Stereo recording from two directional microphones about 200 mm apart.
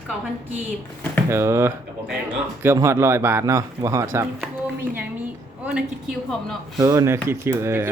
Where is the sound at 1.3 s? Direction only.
15° right (ahead or behind).